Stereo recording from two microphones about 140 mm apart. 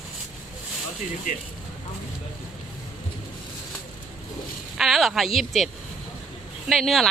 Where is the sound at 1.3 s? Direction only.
70° left (ahead or behind).